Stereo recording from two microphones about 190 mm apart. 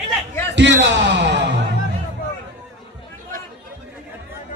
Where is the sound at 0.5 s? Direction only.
70° right (ahead or behind).